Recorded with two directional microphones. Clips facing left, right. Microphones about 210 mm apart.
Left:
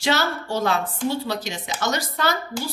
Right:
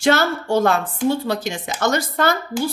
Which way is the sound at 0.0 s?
50° right (ahead or behind).